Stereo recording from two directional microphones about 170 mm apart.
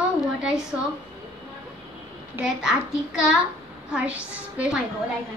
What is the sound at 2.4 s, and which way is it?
A child's voice, 5° right (ahead or behind).